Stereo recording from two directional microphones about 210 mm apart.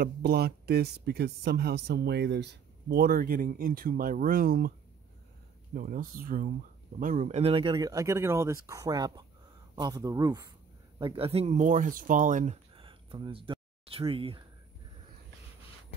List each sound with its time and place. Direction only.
0.0 s speech: 50° right (ahead or behind)
5.8 s speech: 40° right (ahead or behind); by 14.4 s 25° right (ahead or behind)